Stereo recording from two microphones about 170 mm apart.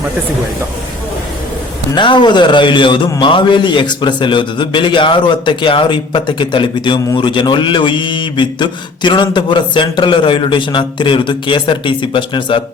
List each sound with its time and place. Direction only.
2.0 s a man's voice: 25° left (ahead or behind)